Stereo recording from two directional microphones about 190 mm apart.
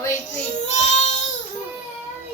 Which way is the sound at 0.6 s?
35° left (ahead or behind).